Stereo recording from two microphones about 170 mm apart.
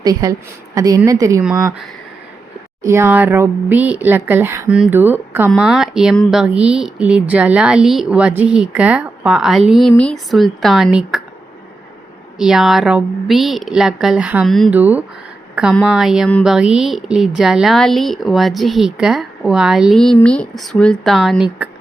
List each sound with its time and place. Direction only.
0.0 s a woman's voice: 20° right (ahead or behind)
2.8 s speech: 15° right (ahead or behind)
12.4 s speech: 5° right (ahead or behind)
14.7 s speech: 10° right (ahead or behind)
15.7 s speech: centre (ahead or behind)